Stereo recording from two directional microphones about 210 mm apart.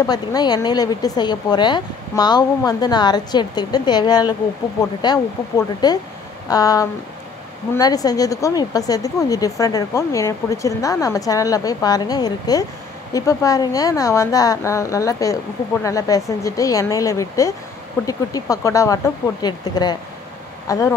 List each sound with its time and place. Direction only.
0.0 s a woman's voice: 20° left (ahead or behind)